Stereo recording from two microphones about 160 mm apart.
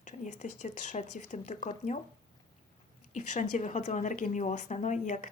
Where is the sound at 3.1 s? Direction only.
50° left (ahead or behind).